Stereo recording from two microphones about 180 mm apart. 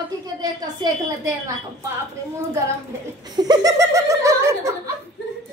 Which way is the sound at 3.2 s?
20° right (ahead or behind).